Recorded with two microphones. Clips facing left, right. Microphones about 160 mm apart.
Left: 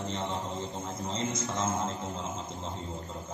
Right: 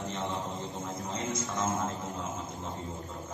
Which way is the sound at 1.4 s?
20° left (ahead or behind).